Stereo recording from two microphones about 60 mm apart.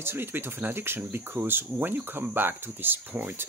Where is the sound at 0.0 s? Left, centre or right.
Right.